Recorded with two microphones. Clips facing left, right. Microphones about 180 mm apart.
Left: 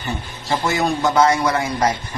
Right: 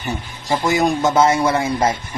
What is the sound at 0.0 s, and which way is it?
A man's voice, 15° right (ahead or behind).